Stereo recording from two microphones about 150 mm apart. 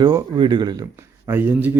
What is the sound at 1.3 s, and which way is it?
Speech, 15° right (ahead or behind).